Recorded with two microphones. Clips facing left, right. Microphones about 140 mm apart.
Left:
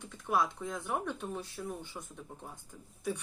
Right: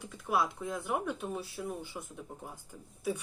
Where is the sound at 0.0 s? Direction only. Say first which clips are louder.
Even; 5° right (ahead or behind).